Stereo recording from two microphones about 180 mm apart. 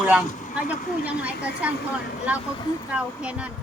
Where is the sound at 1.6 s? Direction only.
5° right (ahead or behind).